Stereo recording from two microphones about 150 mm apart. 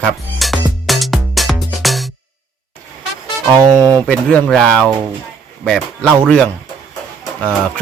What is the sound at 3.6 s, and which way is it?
Speech, 25° right (ahead or behind).